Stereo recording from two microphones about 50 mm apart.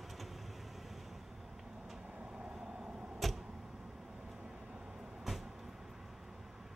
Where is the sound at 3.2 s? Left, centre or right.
Centre.